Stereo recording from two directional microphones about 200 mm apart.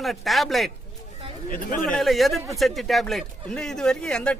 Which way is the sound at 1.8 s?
Centre (ahead or behind).